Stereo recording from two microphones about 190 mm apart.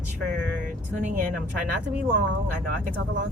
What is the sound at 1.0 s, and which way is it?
Speech, 40° right (ahead or behind).